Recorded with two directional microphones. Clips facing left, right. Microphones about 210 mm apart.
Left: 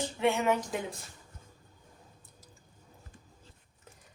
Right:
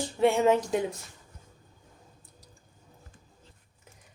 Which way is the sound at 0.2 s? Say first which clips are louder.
Right 6 dB; 30° right (ahead or behind).